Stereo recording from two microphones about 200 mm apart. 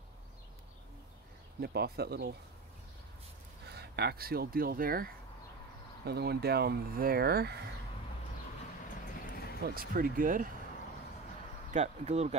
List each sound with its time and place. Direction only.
1.6 s speech: 50° right (ahead or behind)
3.6 s speech: 55° right (ahead or behind)
9.2 s music: 50° left (ahead or behind)
9.8 s speech: 45° right (ahead or behind)
11.7 s speech: 35° right (ahead or behind)